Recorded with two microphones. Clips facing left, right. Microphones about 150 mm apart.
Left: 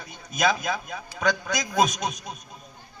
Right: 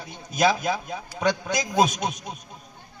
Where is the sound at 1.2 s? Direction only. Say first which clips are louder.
Right 1 dB; 25° right (ahead or behind).